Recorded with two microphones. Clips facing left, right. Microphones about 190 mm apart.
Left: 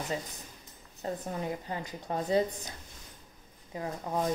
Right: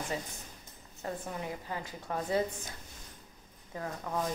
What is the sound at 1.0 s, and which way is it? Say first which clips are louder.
A woman's voice: left 3 dB; 25° left (ahead or behind).